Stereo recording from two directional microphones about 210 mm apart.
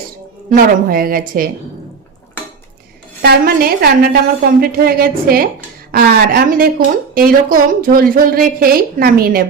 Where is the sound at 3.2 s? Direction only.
45° right (ahead or behind).